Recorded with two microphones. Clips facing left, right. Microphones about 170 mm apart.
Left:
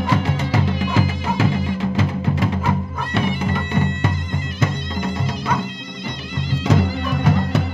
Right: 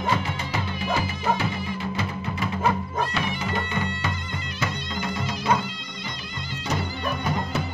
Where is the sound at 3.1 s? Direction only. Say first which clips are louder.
Left 7 dB; 50° left (ahead or behind).